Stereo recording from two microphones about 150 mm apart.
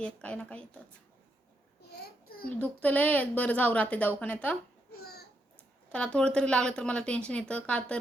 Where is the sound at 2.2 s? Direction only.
80° left.